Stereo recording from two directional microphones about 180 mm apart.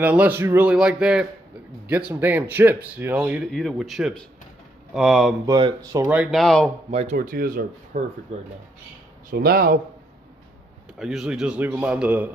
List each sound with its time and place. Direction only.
0.0 s a man's voice: 10° right (ahead or behind)
5.5 s speech: 25° right (ahead or behind)
6.0 s a man's voice: 5° right (ahead or behind)
6.9 s speech: 35° right (ahead or behind)
7.2 s speech: 55° right (ahead or behind)
8.3 s speech: 35° right (ahead or behind)
9.3 s speech: 55° right (ahead or behind)
11.0 s a man's voice: 5° right (ahead or behind)